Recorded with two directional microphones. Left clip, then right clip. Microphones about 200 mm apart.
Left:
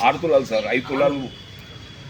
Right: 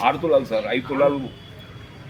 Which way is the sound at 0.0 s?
25° left (ahead or behind).